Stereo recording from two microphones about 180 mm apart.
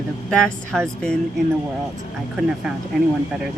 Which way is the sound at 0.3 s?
5° left (ahead or behind).